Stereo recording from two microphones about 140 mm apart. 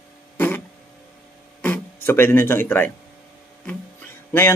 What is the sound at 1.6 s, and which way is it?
Speech, 15° left (ahead or behind).